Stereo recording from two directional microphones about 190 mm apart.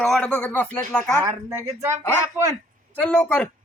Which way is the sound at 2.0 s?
10° left (ahead or behind).